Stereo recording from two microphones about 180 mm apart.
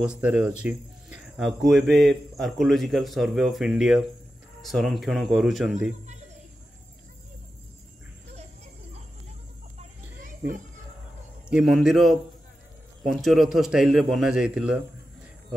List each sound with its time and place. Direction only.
0.0 s speech: 5° right (ahead or behind)
9.8 s children playing: 45° right (ahead or behind)
11.5 s speech: centre (ahead or behind)